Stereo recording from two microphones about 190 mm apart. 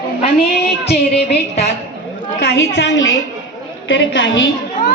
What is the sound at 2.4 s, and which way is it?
A woman's voice, 60° left (ahead or behind).